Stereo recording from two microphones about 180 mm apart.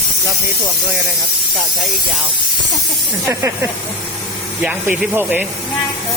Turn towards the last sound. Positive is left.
turn(degrees=-10)  # may be behind; listen again after turning